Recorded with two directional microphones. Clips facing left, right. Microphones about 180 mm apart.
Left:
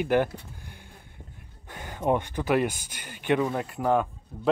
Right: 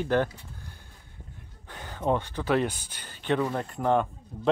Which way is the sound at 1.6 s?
10° left (ahead or behind).